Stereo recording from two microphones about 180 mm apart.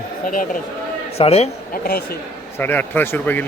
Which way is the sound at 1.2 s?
35° left (ahead or behind).